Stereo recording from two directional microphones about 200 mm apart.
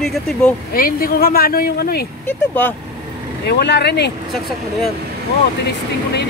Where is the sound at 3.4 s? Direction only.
55° left (ahead or behind).